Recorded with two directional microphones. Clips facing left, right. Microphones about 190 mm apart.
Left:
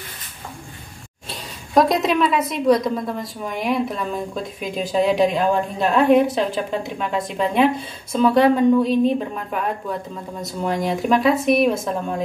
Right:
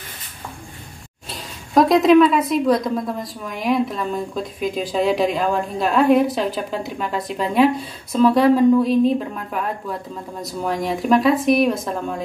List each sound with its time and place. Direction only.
1.7 s a woman's voice: centre (ahead or behind)